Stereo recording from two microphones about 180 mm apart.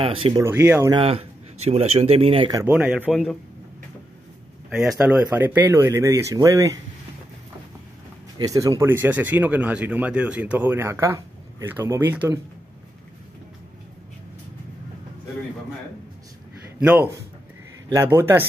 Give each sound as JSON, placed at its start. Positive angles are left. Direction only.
{"t": 0.0, "sound": "speech", "side_deg": -30}
{"t": 0.4, "sound": "speech", "side_deg": -10}
{"t": 0.9, "sound": "speech", "side_deg": -35}
{"t": 2.6, "sound": "speech", "side_deg": -5}
{"t": 4.6, "sound": "speech", "side_deg": -5}
{"t": 8.5, "sound": "speech", "side_deg": -15}
{"t": 16.8, "sound": "speech", "side_deg": -10}